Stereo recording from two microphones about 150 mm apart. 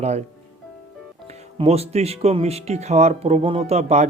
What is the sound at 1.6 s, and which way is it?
Speech, 45° right (ahead or behind).